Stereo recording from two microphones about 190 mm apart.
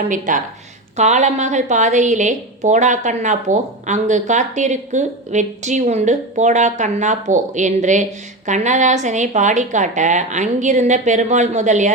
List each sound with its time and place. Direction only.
0.1 s a woman's voice: 45° right (ahead or behind)